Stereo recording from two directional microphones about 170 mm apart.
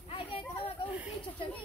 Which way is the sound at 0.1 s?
35° left (ahead or behind).